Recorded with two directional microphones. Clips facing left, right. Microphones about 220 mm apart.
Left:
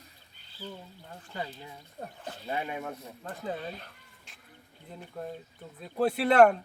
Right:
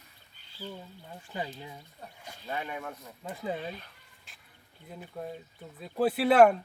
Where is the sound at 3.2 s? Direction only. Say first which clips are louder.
Right 1 dB; 10° right (ahead or behind).